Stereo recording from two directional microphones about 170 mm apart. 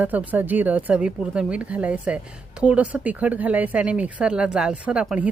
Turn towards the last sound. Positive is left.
turn(degrees=-5)  # may be behind; listen again after turning